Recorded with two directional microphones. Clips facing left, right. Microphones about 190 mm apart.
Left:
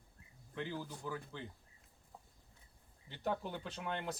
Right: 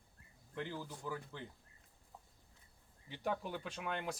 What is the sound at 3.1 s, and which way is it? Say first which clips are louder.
Speech: left 1 dB; 10° right (ahead or behind).